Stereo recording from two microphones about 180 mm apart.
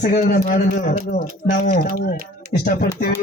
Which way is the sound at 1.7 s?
55° left (ahead or behind).